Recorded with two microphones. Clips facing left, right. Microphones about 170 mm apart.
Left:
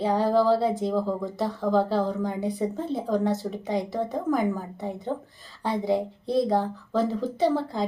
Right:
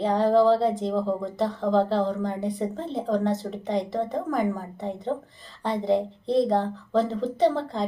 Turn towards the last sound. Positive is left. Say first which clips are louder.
# right 1 dB
turn(degrees=5)  # may be behind; listen again after turning